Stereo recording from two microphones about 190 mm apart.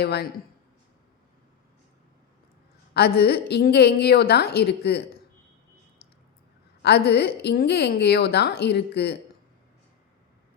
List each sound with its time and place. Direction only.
0.0 s a woman's voice: 60° left (ahead or behind)
2.9 s a woman's voice: 55° left (ahead or behind)
6.8 s a woman's voice: 60° left (ahead or behind)